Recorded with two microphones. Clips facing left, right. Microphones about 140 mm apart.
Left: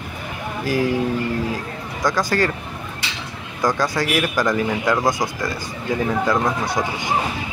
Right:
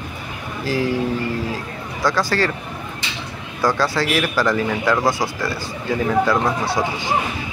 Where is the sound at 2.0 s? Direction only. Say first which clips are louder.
Even; 20° left (ahead or behind).